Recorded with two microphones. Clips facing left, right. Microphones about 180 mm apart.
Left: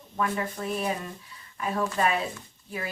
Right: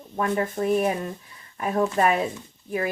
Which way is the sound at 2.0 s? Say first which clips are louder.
Right 4 dB; 50° right (ahead or behind).